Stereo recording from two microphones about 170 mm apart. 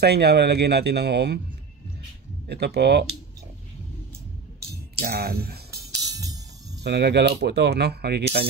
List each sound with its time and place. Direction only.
0.0 s speech: 75° right (ahead or behind)
2.4 s speech: 75° right (ahead or behind)
4.9 s speech: 65° right (ahead or behind)
5.7 s music: 20° right (ahead or behind)
6.8 s speech: 80° right